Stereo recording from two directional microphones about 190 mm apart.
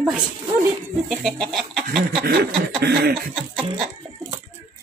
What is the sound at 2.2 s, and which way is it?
Snicker, 55° right (ahead or behind).